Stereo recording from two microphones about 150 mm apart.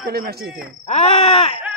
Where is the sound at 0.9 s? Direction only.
45° left (ahead or behind).